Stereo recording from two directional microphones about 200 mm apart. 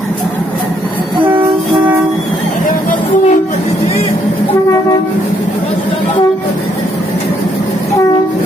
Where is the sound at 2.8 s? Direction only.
40° left (ahead or behind).